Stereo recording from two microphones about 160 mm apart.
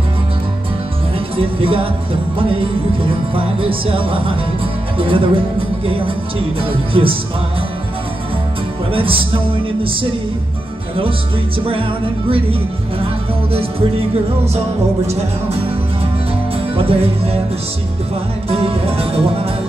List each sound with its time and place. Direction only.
1.3 s music: 35° right (ahead or behind)
3.3 s speech: 35° right (ahead or behind)
8.9 s speech: 35° right (ahead or behind)
12.3 s speech: 35° right (ahead or behind)
15.0 s speech: 40° right (ahead or behind)
16.7 s speech: 35° right (ahead or behind)
18.5 s speech: 35° right (ahead or behind)